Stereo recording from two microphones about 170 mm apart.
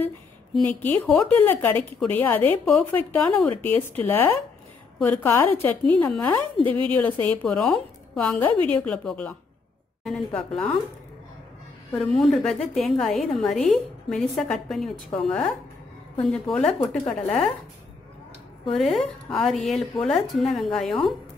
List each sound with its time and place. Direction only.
0.8 s a woman's voice: 5° left (ahead or behind)
6.6 s a woman's voice: 30° right (ahead or behind)
6.9 s a woman's voice: 10° left (ahead or behind)
12.0 s speech: centre (ahead or behind)
18.7 s speech: centre (ahead or behind)